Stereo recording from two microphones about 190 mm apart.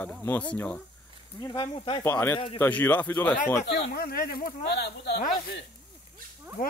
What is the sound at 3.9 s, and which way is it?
Speech, 50° left (ahead or behind).